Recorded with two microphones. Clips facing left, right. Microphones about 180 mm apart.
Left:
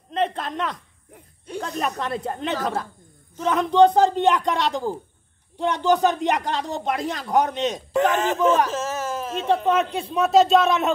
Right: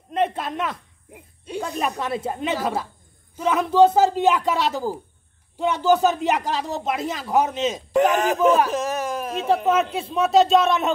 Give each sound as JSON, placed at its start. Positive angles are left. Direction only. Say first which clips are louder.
{"t": 0.1, "sound": "speech", "louder": "right 1 dB", "side_deg": -10}
{"t": 7.9, "sound": "speech", "louder": "right 3 dB", "side_deg": -15}
{"t": 9.4, "sound": "speech", "louder": "right 1 dB", "side_deg": -5}